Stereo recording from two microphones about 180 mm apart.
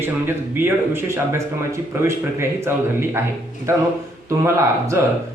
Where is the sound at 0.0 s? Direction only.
10° right (ahead or behind).